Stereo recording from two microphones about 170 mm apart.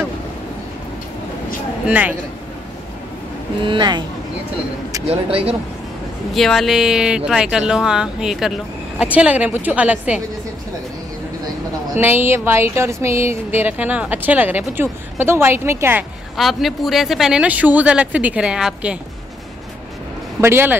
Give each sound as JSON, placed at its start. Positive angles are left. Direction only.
{"t": 1.9, "sound": "speech", "side_deg": -10}
{"t": 3.6, "sound": "speech", "side_deg": -25}
{"t": 5.0, "sound": "speech", "side_deg": -35}
{"t": 6.3, "sound": "speech", "side_deg": 0}
{"t": 12.0, "sound": "speech", "side_deg": -15}
{"t": 16.3, "sound": "speech", "side_deg": 0}
{"t": 20.3, "sound": "speech", "side_deg": -15}